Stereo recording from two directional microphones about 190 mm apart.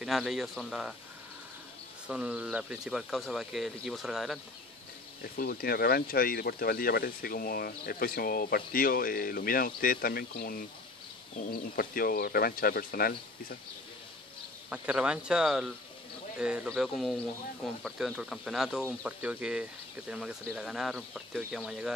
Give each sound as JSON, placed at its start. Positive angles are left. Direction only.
{"t": 0.0, "sound": "speech", "side_deg": 0}
{"t": 2.0, "sound": "speech", "side_deg": -5}
{"t": 5.2, "sound": "speech", "side_deg": 55}
{"t": 11.7, "sound": "speech", "side_deg": 50}
{"t": 14.7, "sound": "speech", "side_deg": -5}